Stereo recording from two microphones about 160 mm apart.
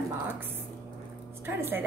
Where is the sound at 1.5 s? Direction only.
15° right (ahead or behind).